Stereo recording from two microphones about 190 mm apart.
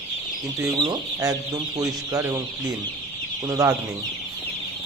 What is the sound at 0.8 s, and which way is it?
Speech, 20° right (ahead or behind).